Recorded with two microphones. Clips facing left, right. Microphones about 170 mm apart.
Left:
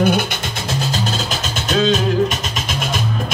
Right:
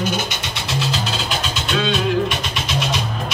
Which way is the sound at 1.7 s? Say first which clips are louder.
Left 5 dB; 40° left (ahead or behind).